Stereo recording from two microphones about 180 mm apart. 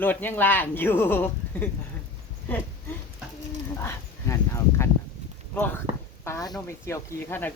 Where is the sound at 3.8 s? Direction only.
15° left (ahead or behind).